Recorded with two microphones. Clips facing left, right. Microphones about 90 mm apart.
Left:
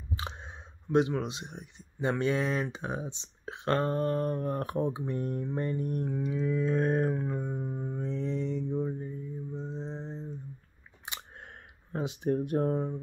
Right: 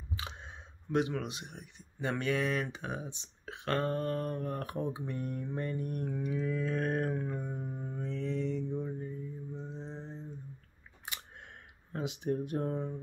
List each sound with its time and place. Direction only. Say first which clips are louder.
0.1 s speech: left 4 dB; 35° left (ahead or behind)
9.5 s mantra: left 5 dB; 30° left (ahead or behind)
11.1 s a sound: left 4 dB; 40° left (ahead or behind)
11.9 s speech: left 4 dB; 35° left (ahead or behind)